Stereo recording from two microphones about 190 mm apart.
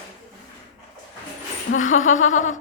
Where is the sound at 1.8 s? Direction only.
40° left (ahead or behind).